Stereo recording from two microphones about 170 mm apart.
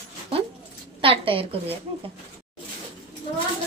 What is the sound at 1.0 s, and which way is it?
Speech, 30° right (ahead or behind).